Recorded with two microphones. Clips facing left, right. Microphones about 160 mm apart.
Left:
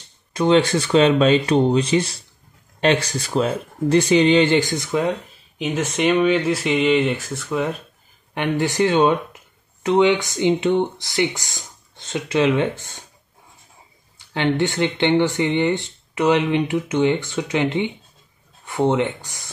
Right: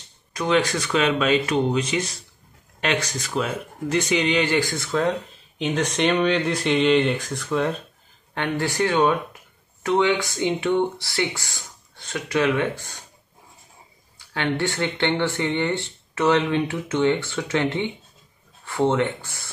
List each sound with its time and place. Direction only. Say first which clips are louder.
0.3 s speech: left 5 dB; 30° left (ahead or behind)
5.6 s speech: left 1 dB; 5° left (ahead or behind)
8.4 s speech: left 4 dB; 20° left (ahead or behind)
14.1 s speech: left 4 dB; 20° left (ahead or behind)